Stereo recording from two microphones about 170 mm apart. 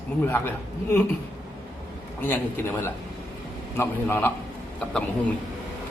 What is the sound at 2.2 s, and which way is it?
A man's voice, 15° left (ahead or behind).